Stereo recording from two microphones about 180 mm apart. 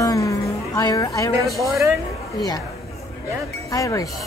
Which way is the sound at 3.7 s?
20° left (ahead or behind).